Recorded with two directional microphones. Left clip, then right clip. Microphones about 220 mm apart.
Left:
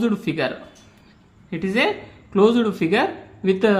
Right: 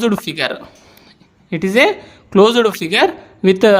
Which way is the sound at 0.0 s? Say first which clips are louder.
Right 5 dB; 50° right (ahead or behind).